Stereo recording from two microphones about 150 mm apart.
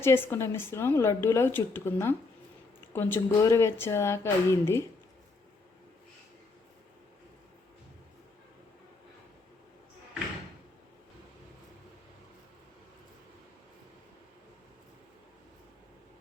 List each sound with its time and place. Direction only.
0.0 s speech: 15° left (ahead or behind)